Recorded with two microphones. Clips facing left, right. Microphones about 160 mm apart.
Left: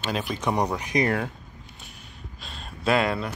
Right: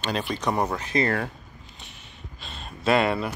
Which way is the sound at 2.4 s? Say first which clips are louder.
Right 1 dB; centre (ahead or behind).